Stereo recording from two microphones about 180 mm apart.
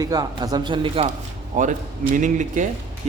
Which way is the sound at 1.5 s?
45° right (ahead or behind).